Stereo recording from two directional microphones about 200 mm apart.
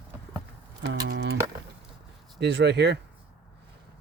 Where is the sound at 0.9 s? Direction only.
55° right (ahead or behind).